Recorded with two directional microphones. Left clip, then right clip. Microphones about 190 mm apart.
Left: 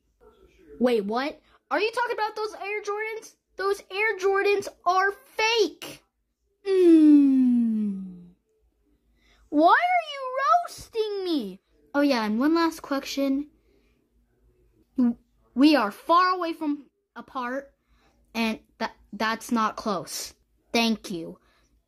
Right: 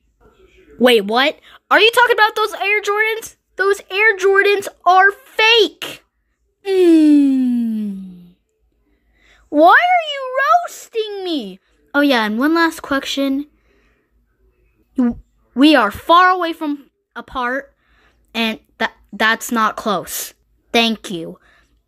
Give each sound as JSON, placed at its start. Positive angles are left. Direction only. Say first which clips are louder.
{"t": 0.8, "sound": "a woman's voice", "louder": "right 12 dB", "side_deg": -15}
{"t": 6.6, "sound": "gasp", "louder": "right 6 dB", "side_deg": 0}
{"t": 9.3, "sound": "a woman's voice", "louder": "right 9 dB", "side_deg": -10}
{"t": 15.0, "sound": "a woman's voice", "louder": "right 7 dB", "side_deg": -20}
{"t": 17.8, "sound": "a woman's voice", "louder": "right 10 dB", "side_deg": -5}